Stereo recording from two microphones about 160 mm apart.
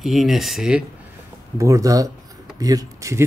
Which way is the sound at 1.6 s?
20° right (ahead or behind).